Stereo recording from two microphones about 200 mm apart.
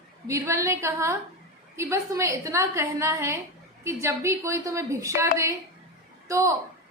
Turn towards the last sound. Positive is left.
turn(degrees=-15)  # may be behind; listen again after turning